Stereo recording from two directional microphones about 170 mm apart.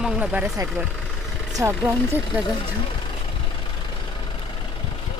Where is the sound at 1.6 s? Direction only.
15° right (ahead or behind).